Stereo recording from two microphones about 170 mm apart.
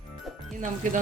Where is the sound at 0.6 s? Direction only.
50° right (ahead or behind).